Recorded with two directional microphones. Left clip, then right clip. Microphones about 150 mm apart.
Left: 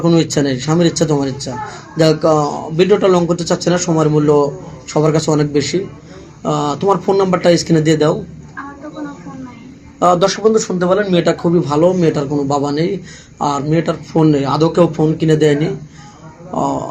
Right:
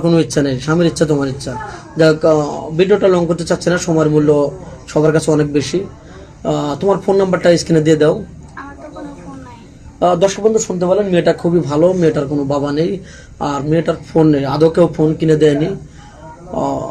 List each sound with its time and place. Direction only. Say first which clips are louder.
0.0 s speech: even; 35° right (ahead or behind)
10.2 s a man's voice: right 1 dB; 20° right (ahead or behind)
11.2 s speech: right 1 dB; 35° right (ahead or behind)